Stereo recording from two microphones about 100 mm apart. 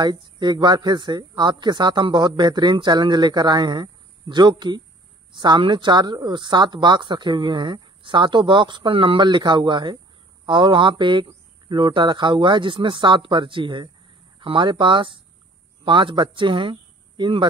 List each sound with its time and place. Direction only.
0.0 s speech: 50° right (ahead or behind)